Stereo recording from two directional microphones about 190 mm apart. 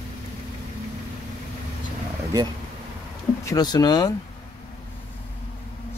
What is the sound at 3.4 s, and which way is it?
Speech, 20° left (ahead or behind).